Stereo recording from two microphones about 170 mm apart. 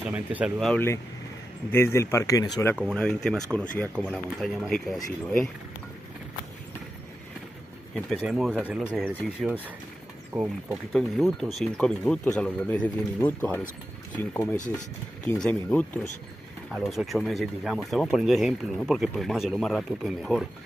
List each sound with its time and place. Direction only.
0.0 s speech: 10° right (ahead or behind)
1.7 s speech: 15° left (ahead or behind)
2.7 s speech: centre (ahead or behind)
8.2 s speech: 5° right (ahead or behind)
16.7 s speech: centre (ahead or behind)